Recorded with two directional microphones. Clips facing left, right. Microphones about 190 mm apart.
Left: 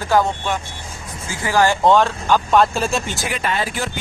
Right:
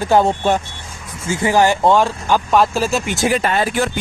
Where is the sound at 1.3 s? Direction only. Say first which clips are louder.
Right 3 dB; 20° right (ahead or behind).